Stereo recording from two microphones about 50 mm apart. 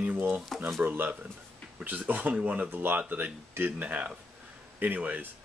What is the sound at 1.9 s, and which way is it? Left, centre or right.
Speech, right.